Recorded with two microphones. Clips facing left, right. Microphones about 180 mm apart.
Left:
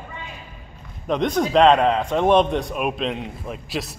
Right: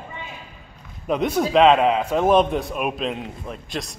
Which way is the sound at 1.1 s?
5° right (ahead or behind).